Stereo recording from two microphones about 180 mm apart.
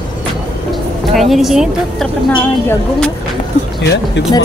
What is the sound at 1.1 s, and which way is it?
Speech, centre (ahead or behind).